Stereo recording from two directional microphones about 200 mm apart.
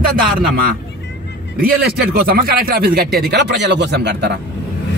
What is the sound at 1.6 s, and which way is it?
Speech, 50° right (ahead or behind).